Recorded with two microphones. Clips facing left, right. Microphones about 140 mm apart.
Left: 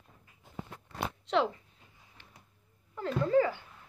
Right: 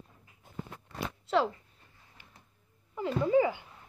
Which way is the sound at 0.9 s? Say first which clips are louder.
Right 1 dB; 5° right (ahead or behind).